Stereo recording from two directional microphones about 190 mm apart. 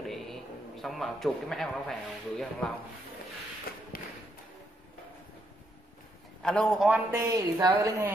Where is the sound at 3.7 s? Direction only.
55° left (ahead or behind).